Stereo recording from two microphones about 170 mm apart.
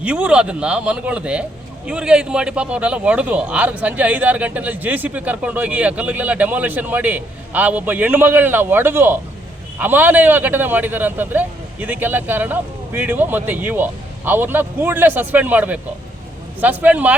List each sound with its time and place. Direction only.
0.0 s a man's voice: 10° right (ahead or behind)